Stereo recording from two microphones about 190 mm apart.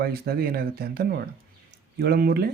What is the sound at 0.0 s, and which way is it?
Speech, 55° right (ahead or behind).